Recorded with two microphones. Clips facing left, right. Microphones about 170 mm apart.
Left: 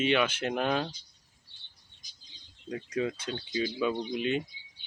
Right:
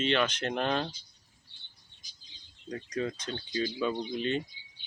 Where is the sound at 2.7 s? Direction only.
10° left (ahead or behind).